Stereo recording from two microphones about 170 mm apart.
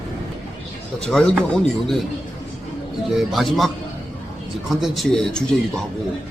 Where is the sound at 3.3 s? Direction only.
Centre (ahead or behind).